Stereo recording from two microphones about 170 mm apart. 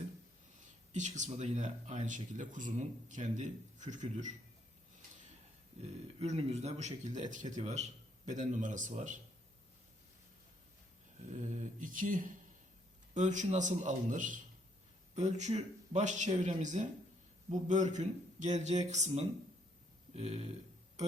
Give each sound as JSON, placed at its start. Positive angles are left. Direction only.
{"t": 0.9, "sound": "speech", "side_deg": -45}
{"t": 5.7, "sound": "speech", "side_deg": -40}
{"t": 11.3, "sound": "speech", "side_deg": -45}